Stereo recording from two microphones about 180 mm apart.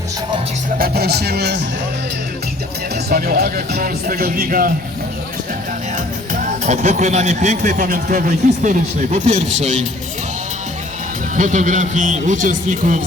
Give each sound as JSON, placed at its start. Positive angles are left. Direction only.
{"t": 0.8, "sound": "speech", "side_deg": -60}
{"t": 3.1, "sound": "speech", "side_deg": -55}
{"t": 6.3, "sound": "speech", "side_deg": -45}
{"t": 11.3, "sound": "speech", "side_deg": -45}